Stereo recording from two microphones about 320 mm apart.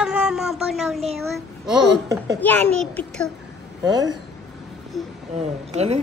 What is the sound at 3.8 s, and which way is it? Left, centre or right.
Speech, centre.